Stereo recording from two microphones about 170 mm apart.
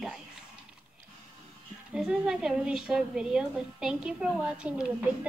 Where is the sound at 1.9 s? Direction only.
5° right (ahead or behind).